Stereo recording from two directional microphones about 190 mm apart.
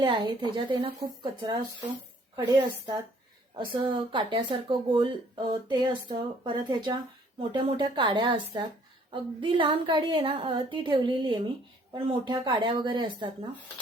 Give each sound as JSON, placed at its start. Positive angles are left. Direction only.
{"t": 0.0, "sound": "speech", "side_deg": -25}